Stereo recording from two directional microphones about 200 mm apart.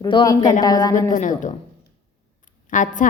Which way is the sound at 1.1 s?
40° left (ahead or behind).